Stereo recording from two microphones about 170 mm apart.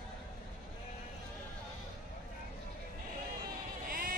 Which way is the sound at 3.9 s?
55° right (ahead or behind).